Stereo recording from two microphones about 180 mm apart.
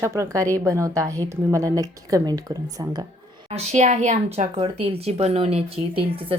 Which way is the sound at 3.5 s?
40° right (ahead or behind).